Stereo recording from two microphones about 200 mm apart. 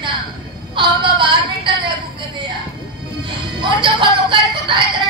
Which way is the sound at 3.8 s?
25° right (ahead or behind).